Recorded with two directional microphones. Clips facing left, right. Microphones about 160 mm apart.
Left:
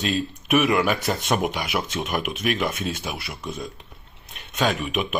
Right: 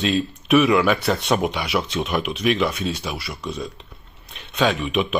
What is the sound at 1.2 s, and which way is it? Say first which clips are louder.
Speech: right 2 dB; 45° left (ahead or behind).